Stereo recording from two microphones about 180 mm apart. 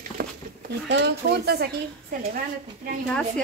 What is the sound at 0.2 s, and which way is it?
A woman's voice, 65° right (ahead or behind).